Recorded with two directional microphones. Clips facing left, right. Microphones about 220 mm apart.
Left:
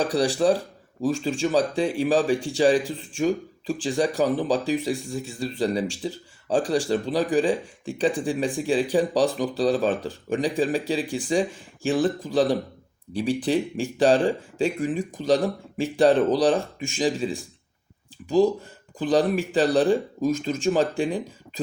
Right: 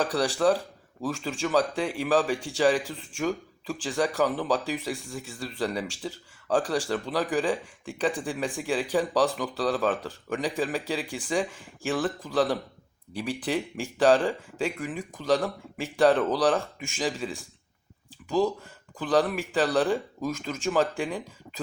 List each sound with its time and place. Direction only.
0.0 s speech: 20° left (ahead or behind)
18.9 s speech: 20° left (ahead or behind)